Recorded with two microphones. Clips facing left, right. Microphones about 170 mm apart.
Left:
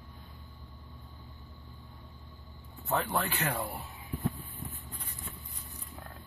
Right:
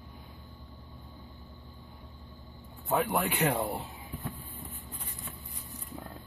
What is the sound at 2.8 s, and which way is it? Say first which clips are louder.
Speech: right 3 dB; 10° right (ahead or behind).